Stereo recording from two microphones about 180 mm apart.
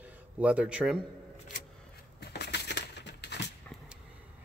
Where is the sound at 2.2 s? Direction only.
65° left (ahead or behind).